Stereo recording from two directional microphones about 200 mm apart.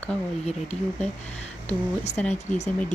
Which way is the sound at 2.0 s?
35° left (ahead or behind).